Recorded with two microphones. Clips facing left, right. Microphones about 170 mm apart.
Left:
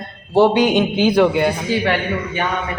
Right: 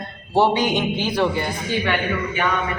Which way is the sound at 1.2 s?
70° left (ahead or behind).